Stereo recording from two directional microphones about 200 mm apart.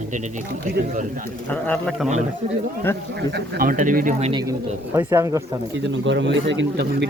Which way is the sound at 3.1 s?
50° right (ahead or behind).